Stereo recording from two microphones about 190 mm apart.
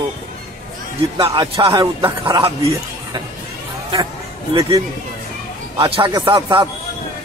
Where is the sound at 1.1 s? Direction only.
25° right (ahead or behind).